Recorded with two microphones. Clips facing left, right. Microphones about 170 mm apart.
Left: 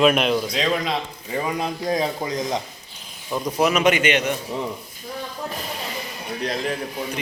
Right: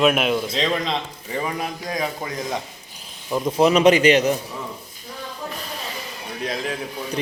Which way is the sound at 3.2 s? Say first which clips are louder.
Right 3 dB; 15° right (ahead or behind).